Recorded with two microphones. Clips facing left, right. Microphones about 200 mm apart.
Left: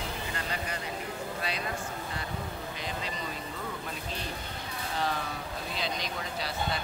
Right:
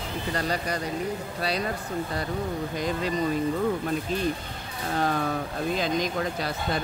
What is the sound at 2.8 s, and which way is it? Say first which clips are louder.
Speech: right 11 dB; 45° right (ahead or behind).